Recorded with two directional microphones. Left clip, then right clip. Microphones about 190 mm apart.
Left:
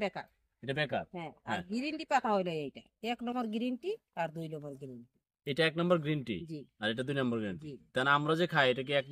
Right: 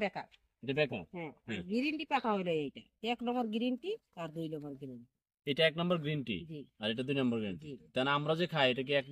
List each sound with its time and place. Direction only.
0.0 s a woman's voice: centre (ahead or behind)
0.7 s a man's voice: 15° left (ahead or behind)
1.1 s a woman's voice: centre (ahead or behind)
5.4 s a man's voice: 15° left (ahead or behind)